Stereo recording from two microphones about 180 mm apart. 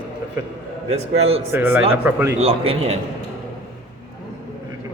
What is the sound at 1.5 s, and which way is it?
Speech, 10° right (ahead or behind).